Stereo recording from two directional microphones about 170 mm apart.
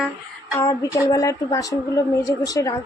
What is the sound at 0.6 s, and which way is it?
A woman's voice, 20° left (ahead or behind).